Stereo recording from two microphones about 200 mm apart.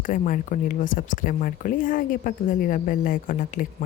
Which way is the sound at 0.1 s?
40° left (ahead or behind).